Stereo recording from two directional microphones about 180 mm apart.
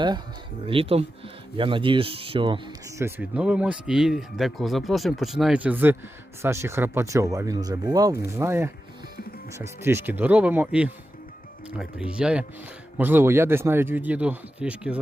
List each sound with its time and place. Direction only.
0.7 s speech: 30° right (ahead or behind)
3.0 s speech: 10° right (ahead or behind)